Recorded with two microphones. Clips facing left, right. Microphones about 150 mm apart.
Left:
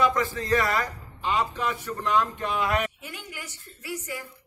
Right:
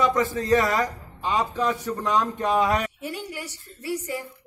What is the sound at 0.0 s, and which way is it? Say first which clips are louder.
Speech: right 2 dB; 20° right (ahead or behind).